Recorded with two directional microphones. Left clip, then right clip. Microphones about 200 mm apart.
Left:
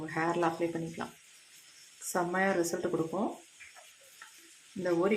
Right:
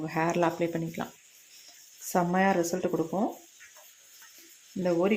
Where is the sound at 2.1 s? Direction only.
30° right (ahead or behind).